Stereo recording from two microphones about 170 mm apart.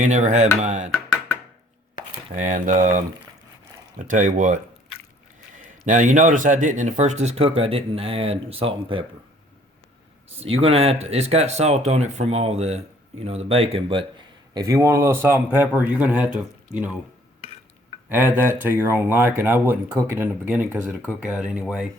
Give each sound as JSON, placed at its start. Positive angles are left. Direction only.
{"t": 0.0, "sound": "speech", "side_deg": -45}
{"t": 2.3, "sound": "speech", "side_deg": -45}
{"t": 5.8, "sound": "speech", "side_deg": -50}
{"t": 10.4, "sound": "speech", "side_deg": -35}
{"t": 14.5, "sound": "speech", "side_deg": -20}
{"t": 18.1, "sound": "speech", "side_deg": -10}